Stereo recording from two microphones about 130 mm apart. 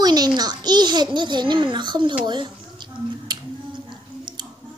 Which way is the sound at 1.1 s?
35° right (ahead or behind).